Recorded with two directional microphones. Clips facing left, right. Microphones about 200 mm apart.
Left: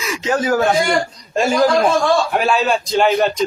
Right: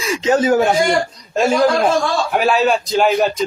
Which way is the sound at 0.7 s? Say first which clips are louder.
Right 1 dB; centre (ahead or behind).